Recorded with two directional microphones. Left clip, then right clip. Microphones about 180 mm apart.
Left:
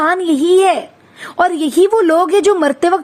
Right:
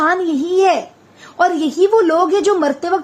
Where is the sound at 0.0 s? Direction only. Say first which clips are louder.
Left 2 dB; 35° left (ahead or behind).